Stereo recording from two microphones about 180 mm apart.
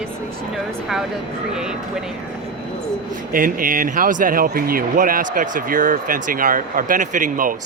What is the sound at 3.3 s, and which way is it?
Speech, 50° right (ahead or behind).